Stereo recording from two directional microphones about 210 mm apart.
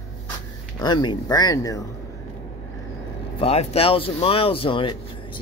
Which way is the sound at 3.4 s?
25° left (ahead or behind).